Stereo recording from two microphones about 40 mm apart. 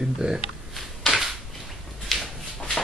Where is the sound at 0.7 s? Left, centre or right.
Centre.